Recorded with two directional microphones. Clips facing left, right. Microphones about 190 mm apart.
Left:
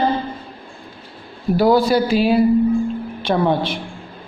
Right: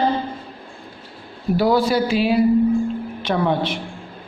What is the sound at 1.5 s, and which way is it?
A woman's voice, 40° left (ahead or behind).